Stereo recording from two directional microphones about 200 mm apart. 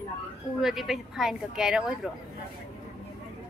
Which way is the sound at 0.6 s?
Centre (ahead or behind).